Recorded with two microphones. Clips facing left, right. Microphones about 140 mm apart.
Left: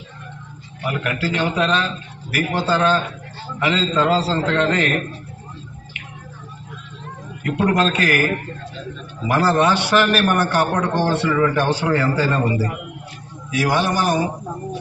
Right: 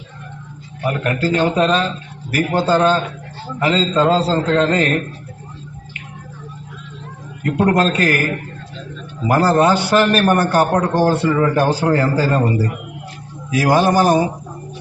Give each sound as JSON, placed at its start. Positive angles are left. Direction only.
{"t": 0.9, "sound": "a man's voice", "side_deg": -40}
{"t": 4.0, "sound": "a man's voice", "side_deg": -25}
{"t": 4.3, "sound": "a man's voice", "side_deg": -40}
{"t": 7.6, "sound": "a man's voice", "side_deg": -40}
{"t": 9.2, "sound": "a man's voice", "side_deg": -40}